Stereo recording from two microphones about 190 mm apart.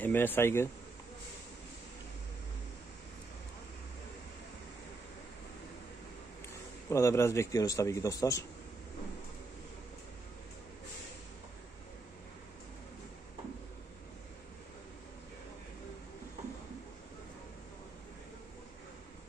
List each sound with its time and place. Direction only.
0.0 s speech: 10° left (ahead or behind)
6.9 s speech: 15° left (ahead or behind)